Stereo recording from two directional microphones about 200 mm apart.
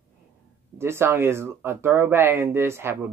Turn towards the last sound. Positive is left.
turn(degrees=-10)  # may be behind; listen again after turning